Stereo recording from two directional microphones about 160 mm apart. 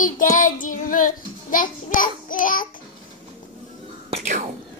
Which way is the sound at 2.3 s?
60° left (ahead or behind).